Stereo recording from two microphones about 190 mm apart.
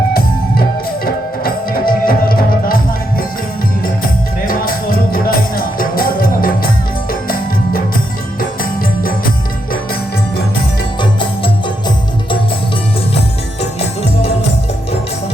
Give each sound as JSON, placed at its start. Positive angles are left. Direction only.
{"t": 1.0, "sound": "music", "side_deg": 50}
{"t": 4.4, "sound": "music", "side_deg": 50}
{"t": 13.6, "sound": "music", "side_deg": 35}